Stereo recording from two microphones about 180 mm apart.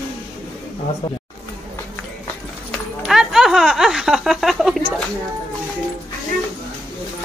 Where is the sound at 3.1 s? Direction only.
Centre (ahead or behind).